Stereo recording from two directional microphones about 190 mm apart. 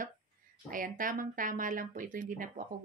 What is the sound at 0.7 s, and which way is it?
Speech, 45° right (ahead or behind).